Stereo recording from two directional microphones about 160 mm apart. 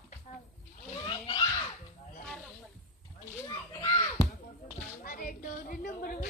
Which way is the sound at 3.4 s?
25° left (ahead or behind).